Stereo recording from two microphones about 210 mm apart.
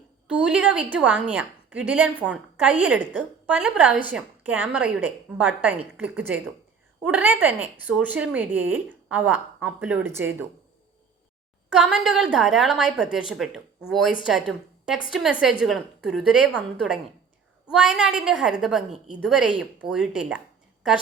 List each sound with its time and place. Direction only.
0.3 s speech: 5° right (ahead or behind)
11.7 s a woman's voice: 5° right (ahead or behind)